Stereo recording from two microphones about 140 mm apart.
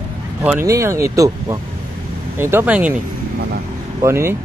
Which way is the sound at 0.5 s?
20° right (ahead or behind).